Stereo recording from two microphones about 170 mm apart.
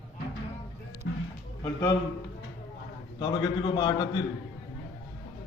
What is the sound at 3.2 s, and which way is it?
Speech, 25° left (ahead or behind).